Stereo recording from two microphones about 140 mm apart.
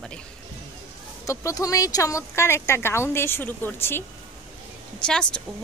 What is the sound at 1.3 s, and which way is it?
Speech, 25° left (ahead or behind).